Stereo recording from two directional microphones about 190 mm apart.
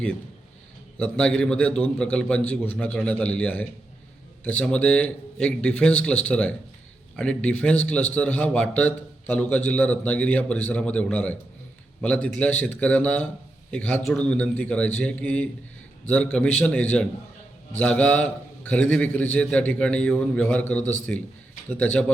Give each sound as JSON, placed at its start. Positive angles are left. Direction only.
{"t": 0.9, "sound": "a man's voice", "side_deg": 5}